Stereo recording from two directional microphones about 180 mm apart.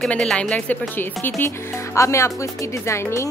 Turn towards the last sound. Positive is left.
turn(degrees=15)  # may be behind; listen again after turning